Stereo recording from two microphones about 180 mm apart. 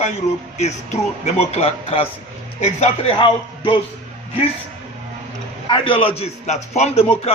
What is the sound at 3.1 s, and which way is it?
Speech, 25° left (ahead or behind).